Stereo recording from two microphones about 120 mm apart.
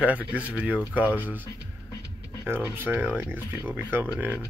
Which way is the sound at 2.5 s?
15° right (ahead or behind).